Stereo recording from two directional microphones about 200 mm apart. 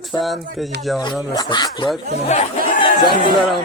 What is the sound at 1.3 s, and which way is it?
Speech, 20° left (ahead or behind).